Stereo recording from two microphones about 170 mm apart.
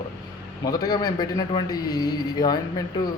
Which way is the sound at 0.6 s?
25° left (ahead or behind).